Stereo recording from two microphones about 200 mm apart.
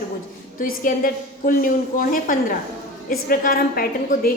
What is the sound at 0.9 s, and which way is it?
A woman's voice, 45° left (ahead or behind).